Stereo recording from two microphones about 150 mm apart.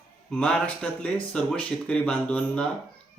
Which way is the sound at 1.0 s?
5° left (ahead or behind).